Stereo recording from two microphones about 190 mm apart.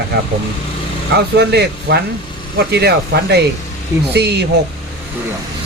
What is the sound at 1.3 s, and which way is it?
Speech, 60° right (ahead or behind).